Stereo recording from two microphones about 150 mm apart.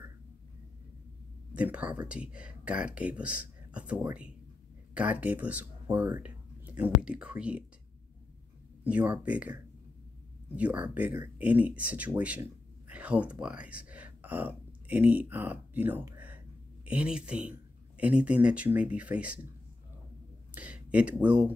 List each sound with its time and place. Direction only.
1.5 s a man's voice: 10° right (ahead or behind)
8.8 s a man's voice: 10° right (ahead or behind)
20.5 s speech: 10° right (ahead or behind)